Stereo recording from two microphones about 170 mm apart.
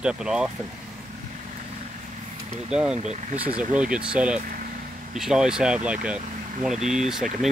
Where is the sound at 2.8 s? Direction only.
40° right (ahead or behind).